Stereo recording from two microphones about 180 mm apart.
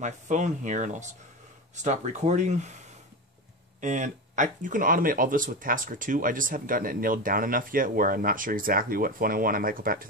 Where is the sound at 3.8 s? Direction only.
45° right (ahead or behind).